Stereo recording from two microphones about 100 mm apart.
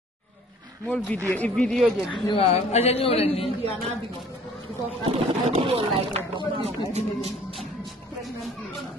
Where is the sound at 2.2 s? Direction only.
75° left (ahead or behind).